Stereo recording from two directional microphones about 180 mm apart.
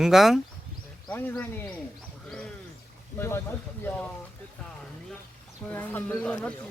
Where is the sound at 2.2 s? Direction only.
5° left (ahead or behind).